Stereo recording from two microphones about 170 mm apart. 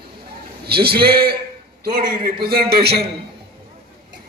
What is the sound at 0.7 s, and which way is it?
A man's voice, 65° right (ahead or behind).